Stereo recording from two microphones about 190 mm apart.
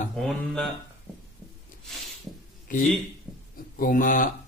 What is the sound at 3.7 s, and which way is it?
Speech, 45° left (ahead or behind).